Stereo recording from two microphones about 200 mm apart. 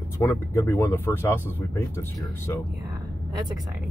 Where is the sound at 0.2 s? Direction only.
10° left (ahead or behind).